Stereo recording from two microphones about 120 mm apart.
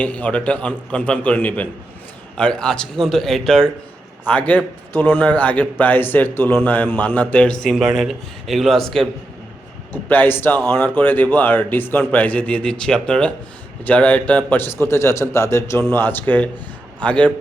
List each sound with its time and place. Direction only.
0.0 s a man's voice: 10° left (ahead or behind)
9.9 s a man's voice: 15° left (ahead or behind)